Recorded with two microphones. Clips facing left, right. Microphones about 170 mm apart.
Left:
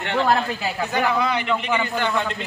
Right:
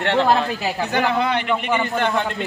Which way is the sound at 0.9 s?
60° right (ahead or behind).